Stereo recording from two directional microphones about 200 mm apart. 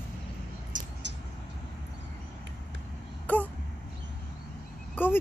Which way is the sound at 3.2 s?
5° left (ahead or behind).